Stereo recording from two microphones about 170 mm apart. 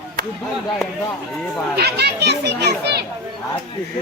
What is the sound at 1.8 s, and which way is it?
A child's voice, 75° right (ahead or behind).